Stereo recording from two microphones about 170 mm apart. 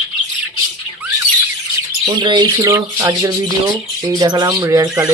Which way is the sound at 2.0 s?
25° right (ahead or behind).